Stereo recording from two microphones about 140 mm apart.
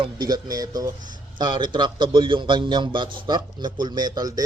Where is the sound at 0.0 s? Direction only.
30° right (ahead or behind).